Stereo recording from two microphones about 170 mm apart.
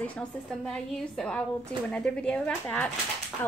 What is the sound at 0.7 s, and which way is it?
Speech, 5° left (ahead or behind).